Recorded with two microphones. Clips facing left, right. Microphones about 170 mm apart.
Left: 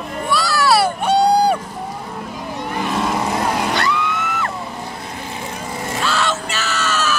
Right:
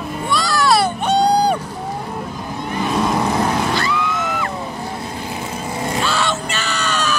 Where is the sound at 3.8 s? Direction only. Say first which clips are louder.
Even; 70° left (ahead or behind).